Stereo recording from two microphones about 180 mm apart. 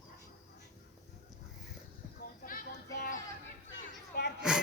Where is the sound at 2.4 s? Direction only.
55° left (ahead or behind).